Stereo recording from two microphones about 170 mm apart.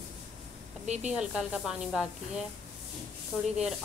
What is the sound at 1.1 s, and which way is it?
Rub, 5° right (ahead or behind).